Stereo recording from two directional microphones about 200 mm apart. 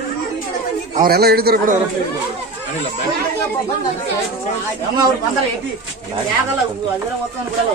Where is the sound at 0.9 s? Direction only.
50° right (ahead or behind).